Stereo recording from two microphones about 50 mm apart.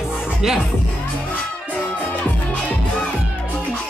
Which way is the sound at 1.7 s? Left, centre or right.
Left.